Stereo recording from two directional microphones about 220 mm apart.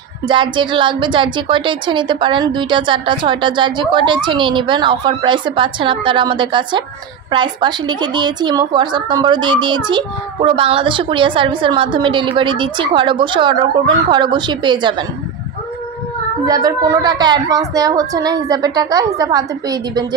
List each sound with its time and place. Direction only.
0.3 s a woman's voice: 20° right (ahead or behind)
16.4 s a woman's voice: 15° right (ahead or behind)